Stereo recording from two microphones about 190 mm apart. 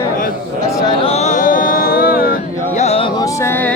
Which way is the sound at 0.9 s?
30° left (ahead or behind).